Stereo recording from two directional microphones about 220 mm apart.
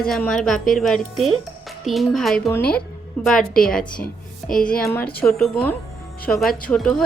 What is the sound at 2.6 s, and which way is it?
Speech, 45° left (ahead or behind).